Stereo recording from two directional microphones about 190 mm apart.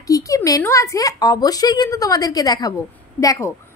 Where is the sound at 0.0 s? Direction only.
15° left (ahead or behind).